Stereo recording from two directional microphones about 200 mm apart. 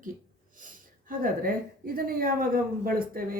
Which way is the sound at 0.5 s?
45° right (ahead or behind).